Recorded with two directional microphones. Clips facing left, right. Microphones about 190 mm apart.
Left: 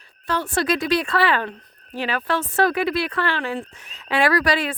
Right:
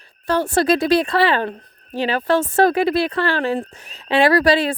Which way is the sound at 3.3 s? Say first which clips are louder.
Right 5 dB; 35° right (ahead or behind).